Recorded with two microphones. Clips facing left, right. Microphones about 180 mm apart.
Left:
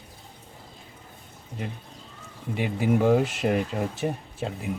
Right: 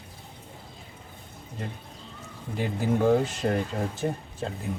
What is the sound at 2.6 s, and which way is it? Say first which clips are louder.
Speech: left 2 dB; centre (ahead or behind).